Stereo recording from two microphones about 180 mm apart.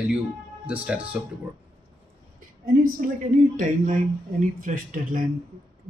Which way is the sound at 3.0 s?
50° right (ahead or behind).